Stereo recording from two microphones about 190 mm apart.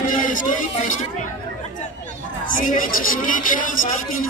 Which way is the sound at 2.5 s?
45° left (ahead or behind).